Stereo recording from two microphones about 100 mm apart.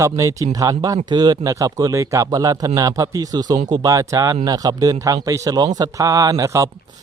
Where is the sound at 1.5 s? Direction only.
35° right (ahead or behind).